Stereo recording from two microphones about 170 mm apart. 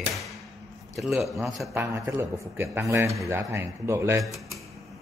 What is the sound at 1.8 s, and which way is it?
A man's voice, 20° right (ahead or behind).